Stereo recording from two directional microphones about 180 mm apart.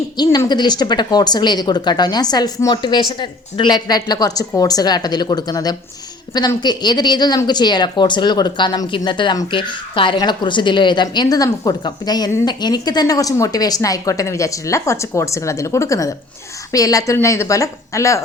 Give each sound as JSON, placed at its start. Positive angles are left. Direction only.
{"t": 0.2, "sound": "a woman's voice", "side_deg": 20}